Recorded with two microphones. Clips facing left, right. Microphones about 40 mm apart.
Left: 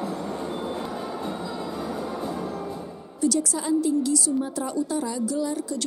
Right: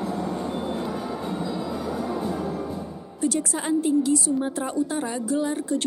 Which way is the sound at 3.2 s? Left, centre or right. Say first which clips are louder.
Left 1 dB; right.